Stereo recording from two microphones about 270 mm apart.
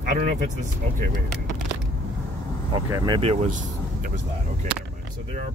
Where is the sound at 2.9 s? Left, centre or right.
Centre.